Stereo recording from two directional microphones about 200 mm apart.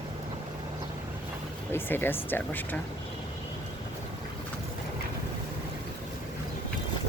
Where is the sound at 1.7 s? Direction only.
10° left (ahead or behind).